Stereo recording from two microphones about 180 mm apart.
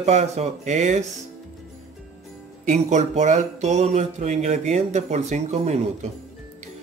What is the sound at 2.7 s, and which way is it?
Speech, 40° right (ahead or behind).